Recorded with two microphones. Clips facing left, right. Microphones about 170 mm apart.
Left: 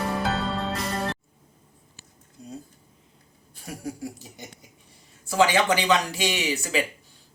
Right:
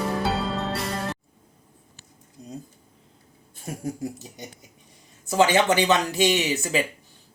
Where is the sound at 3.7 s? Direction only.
20° right (ahead or behind).